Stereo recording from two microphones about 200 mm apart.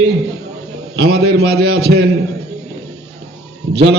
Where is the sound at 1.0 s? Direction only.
50° right (ahead or behind).